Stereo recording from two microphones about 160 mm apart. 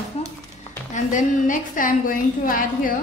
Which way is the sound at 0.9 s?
55° left (ahead or behind).